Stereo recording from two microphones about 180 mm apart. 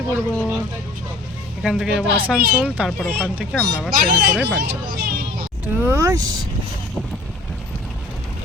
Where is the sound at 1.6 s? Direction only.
5° right (ahead or behind).